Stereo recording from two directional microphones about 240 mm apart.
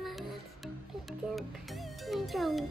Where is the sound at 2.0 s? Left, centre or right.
Centre.